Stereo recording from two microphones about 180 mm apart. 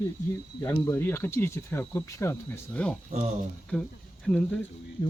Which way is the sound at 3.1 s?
35° right (ahead or behind).